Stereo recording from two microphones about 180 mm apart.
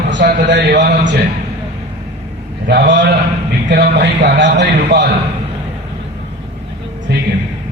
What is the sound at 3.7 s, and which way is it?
A man's voice, 65° right (ahead or behind).